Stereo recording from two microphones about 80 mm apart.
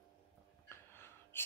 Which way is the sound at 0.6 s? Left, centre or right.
Left.